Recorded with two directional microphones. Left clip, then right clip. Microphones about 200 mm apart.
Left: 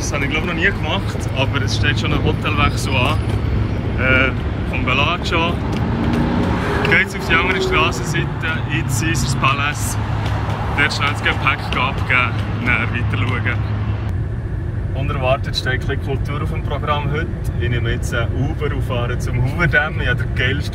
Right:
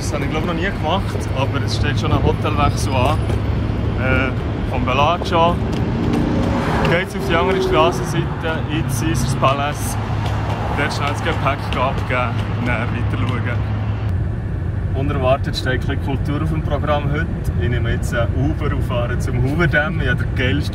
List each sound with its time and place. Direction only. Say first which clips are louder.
0.1 s speech: left 1 dB; 10° right (ahead or behind)
4.8 s speech: right 1 dB; 15° right (ahead or behind)
6.6 s vehicle: right 1 dB; 45° right (ahead or behind)
6.9 s speech: left 3 dB; 15° right (ahead or behind)
11.0 s speech: left 3 dB; 10° right (ahead or behind)
15.2 s speech: even; 10° right (ahead or behind)
16.8 s speech: even; 10° right (ahead or behind)
19.6 s speech: left 2 dB; 5° right (ahead or behind)